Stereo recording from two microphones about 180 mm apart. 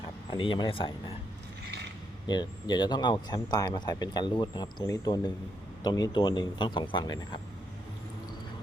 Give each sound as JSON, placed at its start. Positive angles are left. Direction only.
{"t": 0.3, "sound": "speech", "side_deg": 25}
{"t": 2.2, "sound": "speech", "side_deg": 25}